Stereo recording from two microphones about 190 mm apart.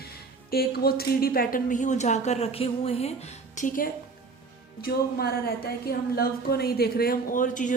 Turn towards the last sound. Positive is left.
turn(degrees=40)  # may be behind; listen again after turning